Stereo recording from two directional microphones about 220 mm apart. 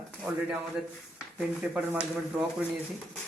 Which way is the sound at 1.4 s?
5° right (ahead or behind).